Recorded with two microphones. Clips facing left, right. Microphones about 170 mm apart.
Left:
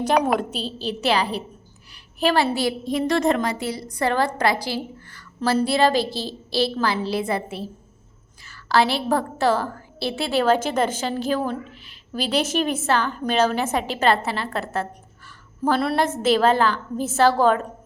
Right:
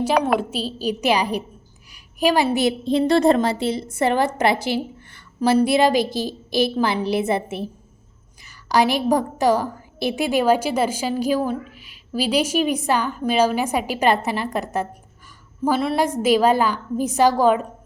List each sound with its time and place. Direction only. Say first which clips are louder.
0.3 s a woman's voice: right 2 dB; 5° right (ahead or behind)
15.6 s a woman's voice: right 1 dB; 5° right (ahead or behind)